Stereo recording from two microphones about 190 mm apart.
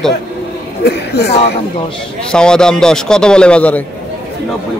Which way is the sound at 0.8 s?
60° left (ahead or behind).